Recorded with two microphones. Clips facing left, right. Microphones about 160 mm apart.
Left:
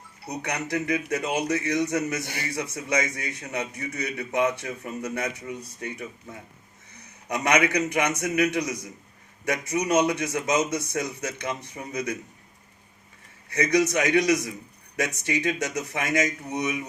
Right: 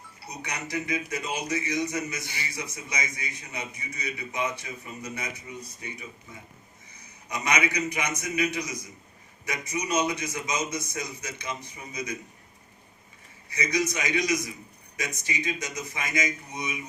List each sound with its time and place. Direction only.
0.3 s speech: 65° left (ahead or behind)
7.3 s speech: 60° left (ahead or behind)
13.5 s speech: 65° left (ahead or behind)